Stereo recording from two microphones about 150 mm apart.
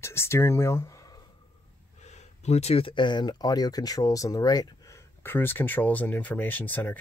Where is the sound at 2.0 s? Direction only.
50° left (ahead or behind); by 6.9 s 10° left (ahead or behind).